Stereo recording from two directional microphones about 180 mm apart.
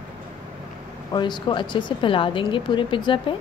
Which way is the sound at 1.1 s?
25° left (ahead or behind).